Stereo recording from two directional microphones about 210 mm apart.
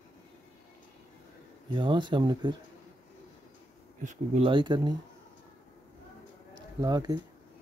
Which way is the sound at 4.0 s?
35° right (ahead or behind).